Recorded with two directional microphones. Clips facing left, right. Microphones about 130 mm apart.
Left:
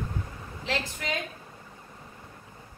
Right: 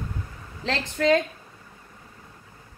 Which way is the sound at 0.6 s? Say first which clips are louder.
Right 10 dB; 90° right.